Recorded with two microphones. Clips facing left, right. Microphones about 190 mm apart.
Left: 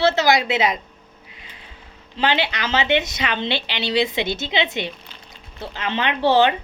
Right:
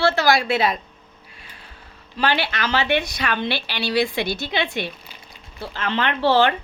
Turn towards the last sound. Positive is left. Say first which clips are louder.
# left 1 dB
turn(degrees=20)  # may be behind; listen again after turning